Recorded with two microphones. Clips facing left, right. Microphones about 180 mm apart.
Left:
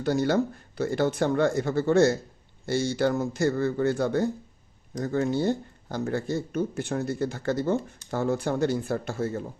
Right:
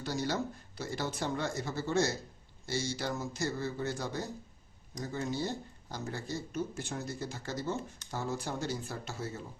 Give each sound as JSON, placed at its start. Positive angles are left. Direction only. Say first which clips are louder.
{"t": 0.0, "sound": "speech", "louder": "left 10 dB", "side_deg": 55}